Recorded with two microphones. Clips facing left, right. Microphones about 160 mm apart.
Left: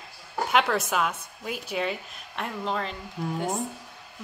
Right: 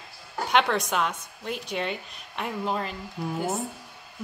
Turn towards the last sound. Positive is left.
turn(degrees=-5)  # may be behind; listen again after turning